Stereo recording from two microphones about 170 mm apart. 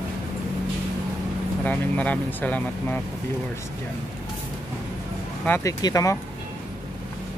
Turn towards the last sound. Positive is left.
turn(degrees=20)  # may be behind; listen again after turning